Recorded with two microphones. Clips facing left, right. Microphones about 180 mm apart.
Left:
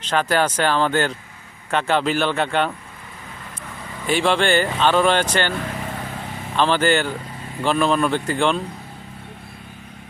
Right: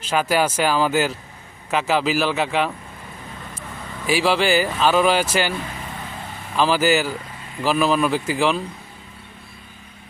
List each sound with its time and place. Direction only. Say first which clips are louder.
0.0 s speech: even; 10° right (ahead or behind)
4.0 s speech: even; 5° right (ahead or behind)
6.6 s speech: even; 5° right (ahead or behind)